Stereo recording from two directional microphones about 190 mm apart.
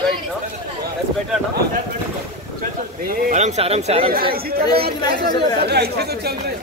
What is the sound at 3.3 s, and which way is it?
Speech, 35° right (ahead or behind).